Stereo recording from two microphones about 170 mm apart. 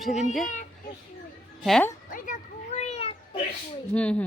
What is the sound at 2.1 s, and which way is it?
Children playing, 50° left (ahead or behind).